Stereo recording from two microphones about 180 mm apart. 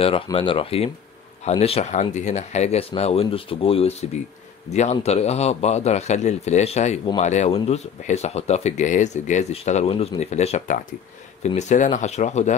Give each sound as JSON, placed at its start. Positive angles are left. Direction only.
{"t": 0.0, "sound": "speech", "side_deg": 30}